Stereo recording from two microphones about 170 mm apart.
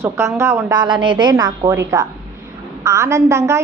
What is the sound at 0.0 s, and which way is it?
A woman's voice, 15° right (ahead or behind).